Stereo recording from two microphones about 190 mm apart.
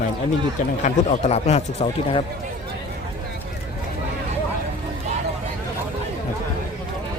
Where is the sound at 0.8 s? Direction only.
35° left (ahead or behind).